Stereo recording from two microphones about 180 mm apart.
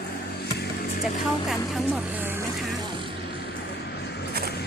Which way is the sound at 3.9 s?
70° left (ahead or behind).